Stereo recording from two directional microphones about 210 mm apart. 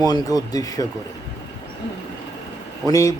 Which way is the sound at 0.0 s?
20° left (ahead or behind).